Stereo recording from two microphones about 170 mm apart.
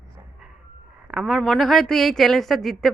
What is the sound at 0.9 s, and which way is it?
Speech, 5° right (ahead or behind).